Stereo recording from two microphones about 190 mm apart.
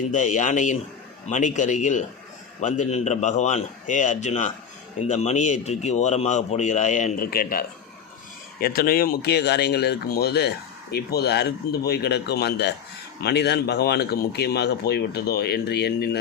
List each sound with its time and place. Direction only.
0.1 s speech: 40° left (ahead or behind); by 16.0 s 60° left (ahead or behind)